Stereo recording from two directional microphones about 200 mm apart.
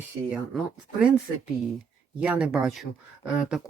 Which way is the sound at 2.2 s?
5° right (ahead or behind).